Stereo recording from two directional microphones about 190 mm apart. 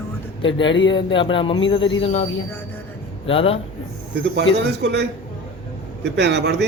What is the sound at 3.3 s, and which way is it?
Speech, 30° left (ahead or behind).